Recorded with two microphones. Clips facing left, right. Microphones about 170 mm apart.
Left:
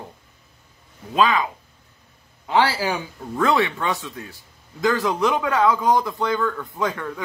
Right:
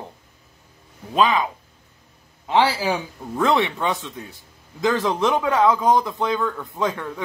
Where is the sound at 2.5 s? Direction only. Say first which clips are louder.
Right 1 dB; 20° right (ahead or behind).